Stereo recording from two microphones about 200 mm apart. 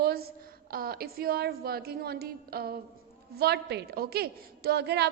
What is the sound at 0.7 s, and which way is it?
A woman's voice, 50° right (ahead or behind).